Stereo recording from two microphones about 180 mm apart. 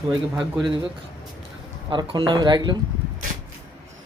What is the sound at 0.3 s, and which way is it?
Speech, 5° right (ahead or behind).